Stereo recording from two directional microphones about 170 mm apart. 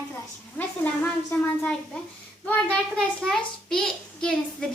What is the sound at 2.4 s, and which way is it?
Child singing, 5° left (ahead or behind).